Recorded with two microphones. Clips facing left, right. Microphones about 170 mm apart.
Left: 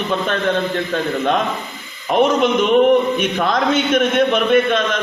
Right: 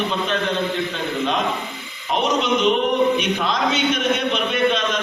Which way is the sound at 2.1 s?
50° left (ahead or behind).